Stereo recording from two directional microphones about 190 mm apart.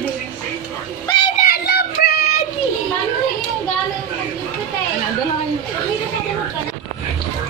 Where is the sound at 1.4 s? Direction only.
55° left (ahead or behind).